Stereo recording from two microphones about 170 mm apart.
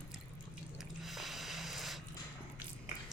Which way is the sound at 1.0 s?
Centre (ahead or behind).